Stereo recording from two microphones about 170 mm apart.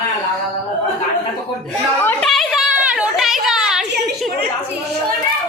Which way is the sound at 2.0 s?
10° left (ahead or behind).